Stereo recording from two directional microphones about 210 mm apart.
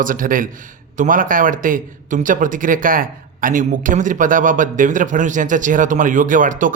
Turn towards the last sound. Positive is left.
turn(degrees=-40)  # may be behind; listen again after turning